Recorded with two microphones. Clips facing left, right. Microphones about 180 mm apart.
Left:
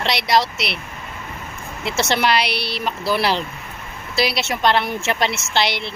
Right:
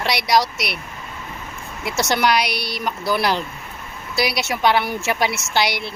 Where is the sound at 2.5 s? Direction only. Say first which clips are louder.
Left 1 dB; 30° left (ahead or behind).